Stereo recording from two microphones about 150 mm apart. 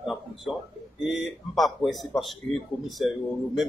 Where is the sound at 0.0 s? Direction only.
Centre (ahead or behind).